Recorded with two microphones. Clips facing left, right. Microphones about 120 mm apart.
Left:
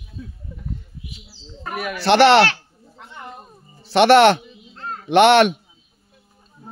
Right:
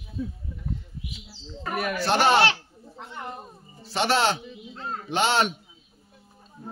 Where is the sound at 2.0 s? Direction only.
85° left.